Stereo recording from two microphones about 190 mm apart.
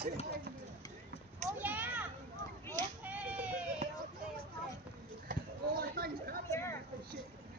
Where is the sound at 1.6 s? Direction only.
10° right (ahead or behind).